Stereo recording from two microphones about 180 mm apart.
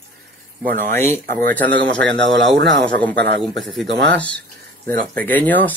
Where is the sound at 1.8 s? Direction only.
80° right.